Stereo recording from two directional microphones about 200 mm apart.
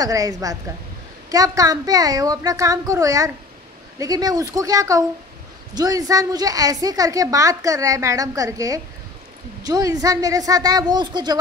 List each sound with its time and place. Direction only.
0.0 s a woman's voice: 15° right (ahead or behind)